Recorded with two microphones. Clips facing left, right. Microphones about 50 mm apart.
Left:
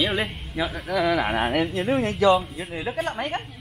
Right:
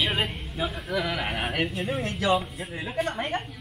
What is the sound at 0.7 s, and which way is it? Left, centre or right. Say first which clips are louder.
Speech: left 9 dB; left.